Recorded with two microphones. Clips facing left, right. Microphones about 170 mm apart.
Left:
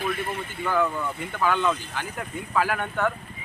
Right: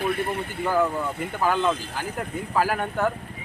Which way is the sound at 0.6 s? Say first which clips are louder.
Right 2 dB; 35° right (ahead or behind).